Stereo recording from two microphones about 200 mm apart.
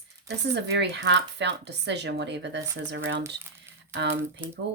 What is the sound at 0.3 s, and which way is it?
A woman's voice, 55° right (ahead or behind).